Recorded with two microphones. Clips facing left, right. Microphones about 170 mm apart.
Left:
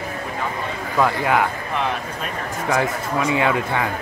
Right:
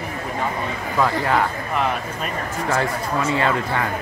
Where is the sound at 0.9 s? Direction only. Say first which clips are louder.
Left 1 dB; 10° left (ahead or behind).